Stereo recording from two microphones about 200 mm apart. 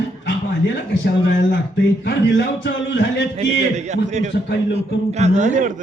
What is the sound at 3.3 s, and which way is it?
A man's voice, 35° right (ahead or behind).